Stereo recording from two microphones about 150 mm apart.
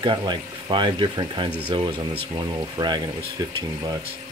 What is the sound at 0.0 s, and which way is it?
Speech, 35° right (ahead or behind).